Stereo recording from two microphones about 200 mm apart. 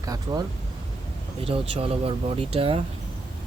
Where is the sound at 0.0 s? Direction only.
15° right (ahead or behind).